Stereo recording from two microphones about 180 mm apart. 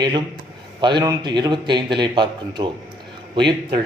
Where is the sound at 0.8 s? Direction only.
25° right (ahead or behind).